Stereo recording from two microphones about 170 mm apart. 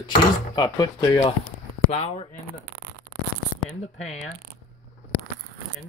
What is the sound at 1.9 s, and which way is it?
Speech, 35° left (ahead or behind).